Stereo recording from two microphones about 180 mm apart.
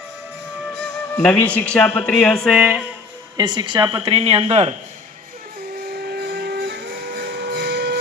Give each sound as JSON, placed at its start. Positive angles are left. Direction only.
{"t": 1.1, "sound": "speech", "side_deg": 5}
{"t": 3.3, "sound": "a woman's voice", "side_deg": -25}
{"t": 6.1, "sound": "music", "side_deg": -65}